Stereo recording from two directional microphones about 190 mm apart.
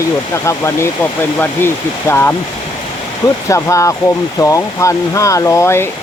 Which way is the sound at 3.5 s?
15° left (ahead or behind).